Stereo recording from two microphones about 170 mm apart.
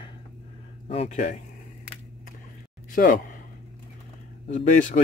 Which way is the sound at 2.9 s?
55° left (ahead or behind).